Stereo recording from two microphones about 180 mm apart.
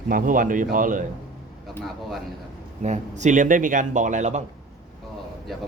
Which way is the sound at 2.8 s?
40° right (ahead or behind).